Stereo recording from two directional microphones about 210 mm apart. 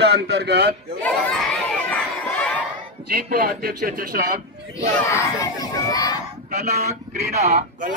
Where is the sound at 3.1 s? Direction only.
45° right (ahead or behind).